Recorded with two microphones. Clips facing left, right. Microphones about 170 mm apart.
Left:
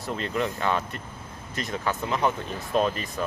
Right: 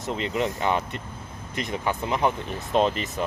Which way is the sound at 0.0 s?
20° right (ahead or behind).